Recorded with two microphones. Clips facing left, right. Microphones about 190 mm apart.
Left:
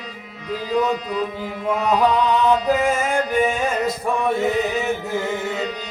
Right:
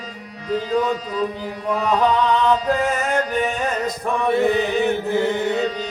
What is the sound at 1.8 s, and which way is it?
Chant, 10° left (ahead or behind).